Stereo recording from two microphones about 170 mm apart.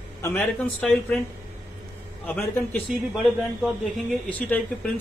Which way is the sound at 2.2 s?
10° left (ahead or behind).